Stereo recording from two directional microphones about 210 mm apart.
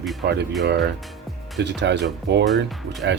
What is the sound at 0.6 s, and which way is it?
Speech, 55° right (ahead or behind).